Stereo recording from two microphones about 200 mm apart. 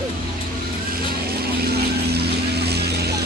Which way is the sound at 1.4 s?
50° right (ahead or behind).